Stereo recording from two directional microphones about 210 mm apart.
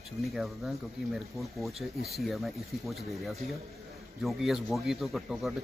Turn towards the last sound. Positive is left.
turn(degrees=0)  # may be behind; listen again after turning